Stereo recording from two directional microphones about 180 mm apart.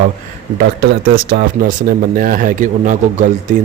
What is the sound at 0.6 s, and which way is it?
A man's voice, 55° right (ahead or behind).